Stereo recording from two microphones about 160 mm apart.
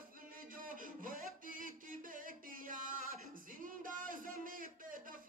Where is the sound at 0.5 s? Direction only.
60° right (ahead or behind).